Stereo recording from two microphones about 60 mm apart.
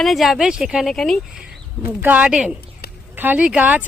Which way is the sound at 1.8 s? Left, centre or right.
Right.